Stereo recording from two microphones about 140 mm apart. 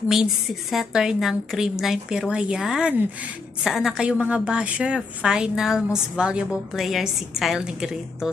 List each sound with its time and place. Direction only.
0.1 s a woman's voice: centre (ahead or behind)